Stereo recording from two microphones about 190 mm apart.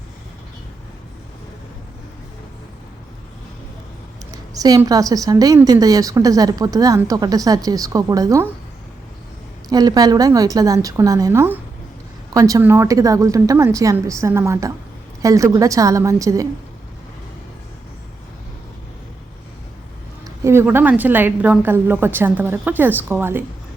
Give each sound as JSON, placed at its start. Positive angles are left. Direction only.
{"t": 4.5, "sound": "a woman's voice", "side_deg": -20}
{"t": 9.6, "sound": "a woman's voice", "side_deg": -20}
{"t": 20.2, "sound": "a woman's voice", "side_deg": -15}